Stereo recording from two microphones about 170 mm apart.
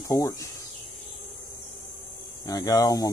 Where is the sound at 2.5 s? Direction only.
20° left (ahead or behind).